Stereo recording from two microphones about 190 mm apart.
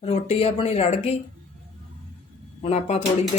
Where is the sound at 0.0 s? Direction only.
30° left (ahead or behind).